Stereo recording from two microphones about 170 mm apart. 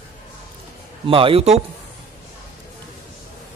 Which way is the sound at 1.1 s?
30° right (ahead or behind).